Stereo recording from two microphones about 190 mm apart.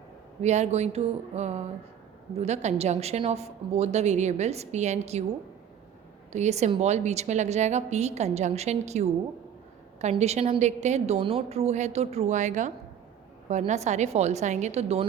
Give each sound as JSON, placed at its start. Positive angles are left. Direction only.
{"t": 0.4, "sound": "a woman's voice", "side_deg": -35}
{"t": 6.3, "sound": "a woman's voice", "side_deg": -35}